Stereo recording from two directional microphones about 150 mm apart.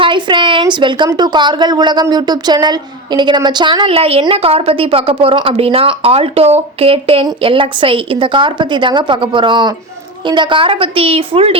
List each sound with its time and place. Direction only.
0.0 s a woman's voice: 30° right (ahead or behind)